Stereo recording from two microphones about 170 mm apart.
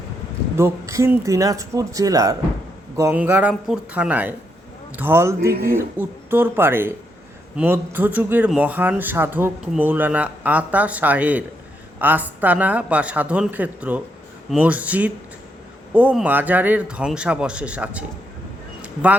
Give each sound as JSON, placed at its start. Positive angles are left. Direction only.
{"t": 0.5, "sound": "a man's voice", "side_deg": -15}